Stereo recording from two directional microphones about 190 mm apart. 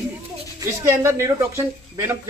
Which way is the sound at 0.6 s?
15° right (ahead or behind).